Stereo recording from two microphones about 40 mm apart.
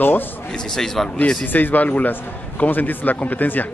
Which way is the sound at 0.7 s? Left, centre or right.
Centre.